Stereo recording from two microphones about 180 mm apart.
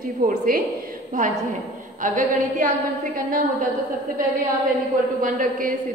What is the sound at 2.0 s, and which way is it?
Speech, 45° right (ahead or behind).